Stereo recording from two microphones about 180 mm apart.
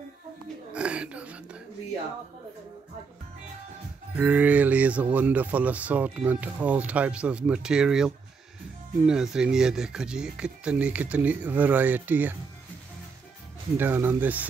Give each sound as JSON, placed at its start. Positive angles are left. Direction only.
{"t": 0.7, "sound": "whispering", "side_deg": -5}
{"t": 4.2, "sound": "speech", "side_deg": -10}
{"t": 13.7, "sound": "speech", "side_deg": -10}